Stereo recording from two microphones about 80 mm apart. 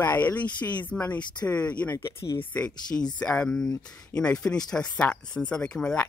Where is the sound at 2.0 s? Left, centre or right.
Left.